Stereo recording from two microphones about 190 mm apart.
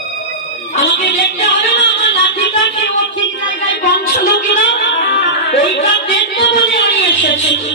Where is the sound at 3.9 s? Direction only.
60° left (ahead or behind).